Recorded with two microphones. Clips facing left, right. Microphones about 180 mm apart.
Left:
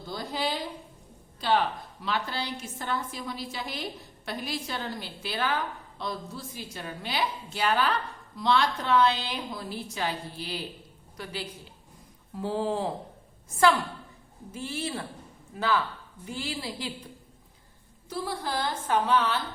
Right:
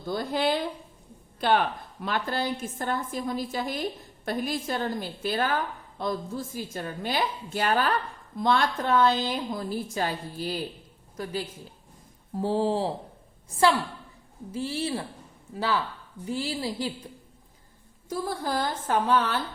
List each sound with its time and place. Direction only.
0.1 s a woman's voice: 55° right (ahead or behind)
18.1 s a woman's voice: 45° right (ahead or behind)